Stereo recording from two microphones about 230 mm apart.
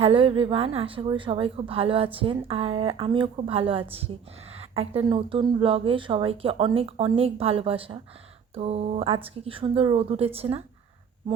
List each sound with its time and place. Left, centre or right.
0.0 s speech: right